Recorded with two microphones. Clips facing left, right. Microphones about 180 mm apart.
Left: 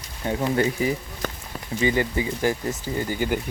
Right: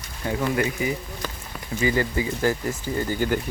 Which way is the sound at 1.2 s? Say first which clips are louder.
Left 5 dB; 55° left (ahead or behind).